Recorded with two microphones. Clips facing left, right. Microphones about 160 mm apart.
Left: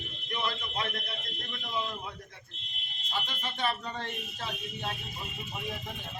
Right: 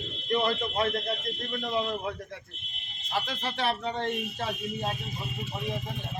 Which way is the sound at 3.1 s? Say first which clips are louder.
Right 5 dB; 80° right.